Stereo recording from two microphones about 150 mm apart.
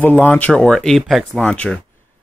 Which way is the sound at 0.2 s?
10° left (ahead or behind).